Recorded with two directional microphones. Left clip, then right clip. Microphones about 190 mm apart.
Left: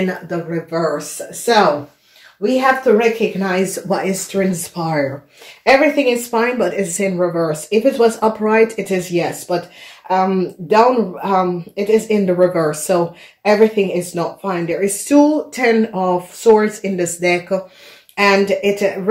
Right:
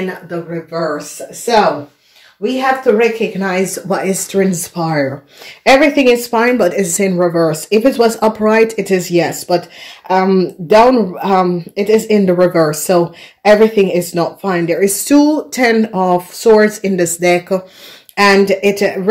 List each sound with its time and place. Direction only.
0.0 s speech: 55° left (ahead or behind)
2.6 s a woman's voice: centre (ahead or behind)
4.0 s speech: 35° right (ahead or behind)
6.3 s speech: 50° right (ahead or behind)